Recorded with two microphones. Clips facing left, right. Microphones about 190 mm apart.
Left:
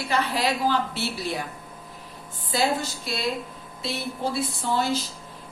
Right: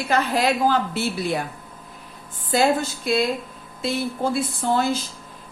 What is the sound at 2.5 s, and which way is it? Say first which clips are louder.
Speech: right 5 dB; 50° right (ahead or behind).